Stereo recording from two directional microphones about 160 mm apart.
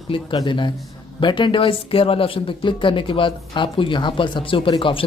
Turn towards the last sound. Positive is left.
turn(degrees=30)  # may be behind; listen again after turning